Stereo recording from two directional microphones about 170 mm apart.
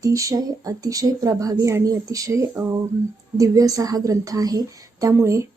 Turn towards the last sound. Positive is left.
turn(degrees=-15)  # may be behind; listen again after turning